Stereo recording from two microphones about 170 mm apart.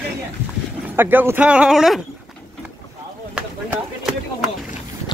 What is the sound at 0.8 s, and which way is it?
Speech, 10° right (ahead or behind).